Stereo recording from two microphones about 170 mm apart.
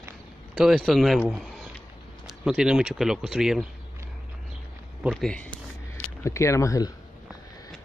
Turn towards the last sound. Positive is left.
turn(degrees=20)  # may be behind; listen again after turning